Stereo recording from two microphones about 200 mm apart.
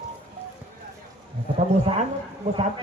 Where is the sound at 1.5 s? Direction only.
35° right (ahead or behind).